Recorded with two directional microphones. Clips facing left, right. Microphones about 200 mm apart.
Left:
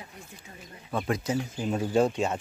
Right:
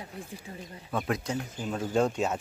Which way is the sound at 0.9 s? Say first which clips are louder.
Left 2 dB; centre (ahead or behind).